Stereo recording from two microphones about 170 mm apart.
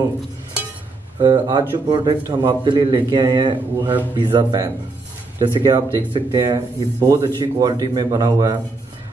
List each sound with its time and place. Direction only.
1.2 s a man's voice: 25° right (ahead or behind)